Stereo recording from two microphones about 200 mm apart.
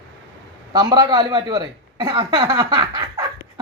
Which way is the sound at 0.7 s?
20° right (ahead or behind).